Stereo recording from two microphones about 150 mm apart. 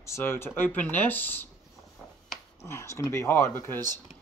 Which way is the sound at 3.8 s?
25° right (ahead or behind).